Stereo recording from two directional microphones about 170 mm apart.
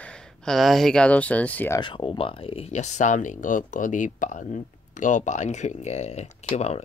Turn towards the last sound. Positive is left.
turn(degrees=40)  # may be behind; listen again after turning